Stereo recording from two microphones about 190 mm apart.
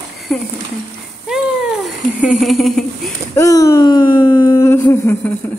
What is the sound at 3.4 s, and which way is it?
Speech, 15° left (ahead or behind).